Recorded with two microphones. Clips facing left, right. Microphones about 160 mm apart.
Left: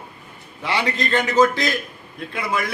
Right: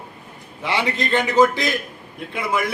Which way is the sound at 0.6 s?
20° right (ahead or behind).